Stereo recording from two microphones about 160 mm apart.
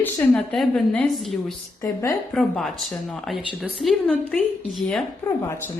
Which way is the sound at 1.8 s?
20° left (ahead or behind).